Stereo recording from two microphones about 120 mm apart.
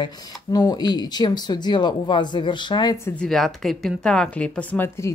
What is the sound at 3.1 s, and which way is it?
Speech, 5° left (ahead or behind).